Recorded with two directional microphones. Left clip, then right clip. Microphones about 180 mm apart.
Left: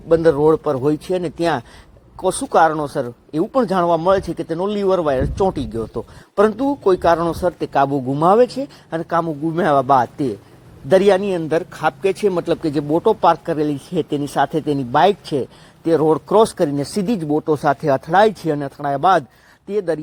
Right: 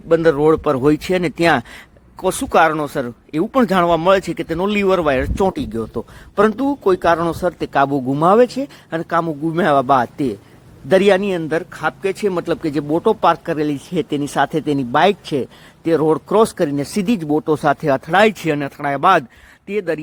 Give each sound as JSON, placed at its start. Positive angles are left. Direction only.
{"t": 0.1, "sound": "speech", "side_deg": -20}
{"t": 11.4, "sound": "speech", "side_deg": -5}
{"t": 12.3, "sound": "speech", "side_deg": -10}
{"t": 17.3, "sound": "speech", "side_deg": -50}
{"t": 18.4, "sound": "speech", "side_deg": -25}